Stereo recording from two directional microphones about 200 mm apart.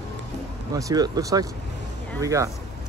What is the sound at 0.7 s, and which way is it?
Speech, 15° right (ahead or behind).